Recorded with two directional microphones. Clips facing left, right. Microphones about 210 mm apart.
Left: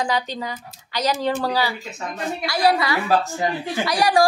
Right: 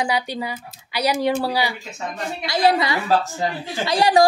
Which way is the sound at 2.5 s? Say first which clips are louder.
Right 1 dB; 25° right (ahead or behind).